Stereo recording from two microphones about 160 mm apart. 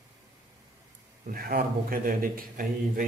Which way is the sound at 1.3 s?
65° right (ahead or behind).